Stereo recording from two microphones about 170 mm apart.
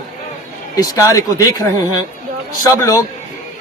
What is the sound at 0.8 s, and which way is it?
A man's voice, 20° left (ahead or behind).